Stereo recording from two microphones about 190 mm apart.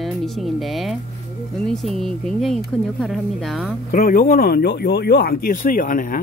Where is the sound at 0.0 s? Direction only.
Centre (ahead or behind).